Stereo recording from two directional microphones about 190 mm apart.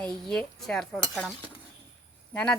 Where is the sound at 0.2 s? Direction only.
Centre (ahead or behind).